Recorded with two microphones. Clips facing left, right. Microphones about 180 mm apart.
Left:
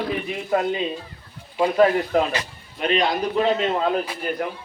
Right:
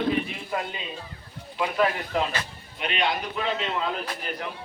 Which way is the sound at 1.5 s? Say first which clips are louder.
Left 7 dB; 35° left (ahead or behind).